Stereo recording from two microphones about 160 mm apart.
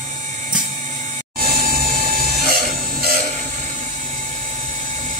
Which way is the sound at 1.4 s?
65° right (ahead or behind).